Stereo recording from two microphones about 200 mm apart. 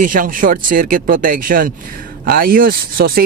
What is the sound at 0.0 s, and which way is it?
A man's voice, 40° right (ahead or behind).